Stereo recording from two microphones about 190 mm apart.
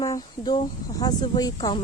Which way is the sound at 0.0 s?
20° left (ahead or behind).